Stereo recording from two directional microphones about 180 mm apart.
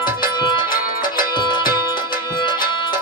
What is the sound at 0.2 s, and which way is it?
Music, 25° left (ahead or behind).